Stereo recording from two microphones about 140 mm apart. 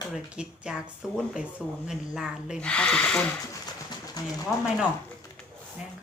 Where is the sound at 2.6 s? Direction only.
10° left (ahead or behind).